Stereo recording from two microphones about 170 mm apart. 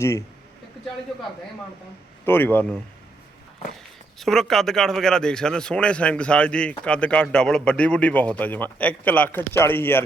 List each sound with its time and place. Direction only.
0.0 s speech: 15° left (ahead or behind)
2.2 s speech: 10° left (ahead or behind)
4.2 s speech: centre (ahead or behind)